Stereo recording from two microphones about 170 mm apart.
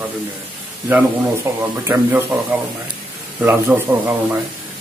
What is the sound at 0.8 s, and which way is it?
Speech, 10° right (ahead or behind).